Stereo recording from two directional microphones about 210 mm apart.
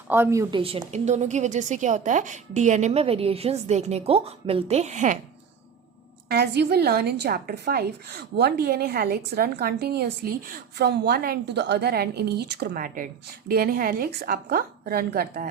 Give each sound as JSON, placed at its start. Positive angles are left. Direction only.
{"t": 0.1, "sound": "speech", "side_deg": -10}
{"t": 0.6, "sound": "a woman's voice", "side_deg": -25}
{"t": 6.2, "sound": "a woman's voice", "side_deg": -50}